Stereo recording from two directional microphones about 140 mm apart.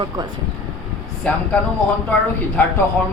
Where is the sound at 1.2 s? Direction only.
10° left (ahead or behind).